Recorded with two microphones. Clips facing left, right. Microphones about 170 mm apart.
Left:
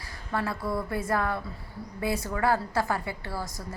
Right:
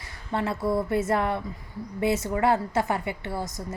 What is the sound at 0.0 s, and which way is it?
A woman's voice, 20° right (ahead or behind).